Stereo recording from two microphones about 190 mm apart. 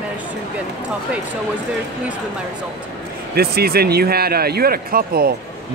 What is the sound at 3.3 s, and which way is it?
A man's voice, 55° right (ahead or behind).